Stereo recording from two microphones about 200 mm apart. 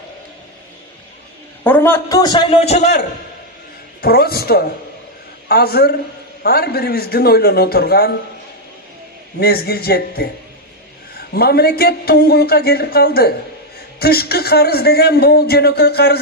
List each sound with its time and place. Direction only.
1.6 s a man's voice: 10° left (ahead or behind)
2.6 s a man's voice: 35° left (ahead or behind)
4.0 s a man's voice: 50° left (ahead or behind)
9.4 s a man's voice: 50° left (ahead or behind)